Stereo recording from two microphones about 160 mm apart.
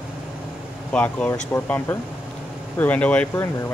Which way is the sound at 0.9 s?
10° left (ahead or behind).